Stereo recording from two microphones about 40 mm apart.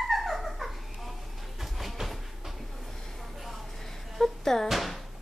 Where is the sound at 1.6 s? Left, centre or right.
Centre.